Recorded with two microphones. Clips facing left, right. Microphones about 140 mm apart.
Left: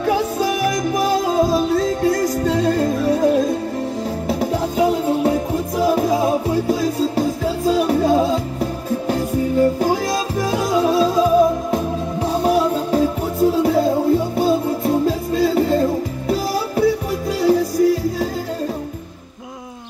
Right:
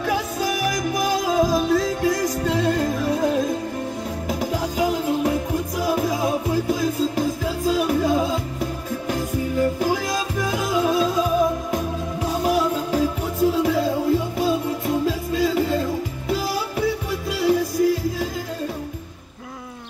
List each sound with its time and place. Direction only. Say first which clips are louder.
0.0 s music: left 5 dB; 35° left (ahead or behind)